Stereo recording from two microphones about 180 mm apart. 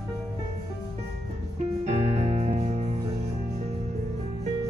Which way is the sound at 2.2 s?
40° right (ahead or behind).